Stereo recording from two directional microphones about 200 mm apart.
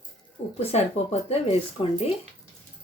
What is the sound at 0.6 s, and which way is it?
Speech, 30° left (ahead or behind).